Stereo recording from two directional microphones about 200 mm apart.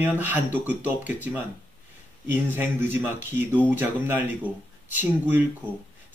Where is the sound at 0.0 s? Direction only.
10° right (ahead or behind).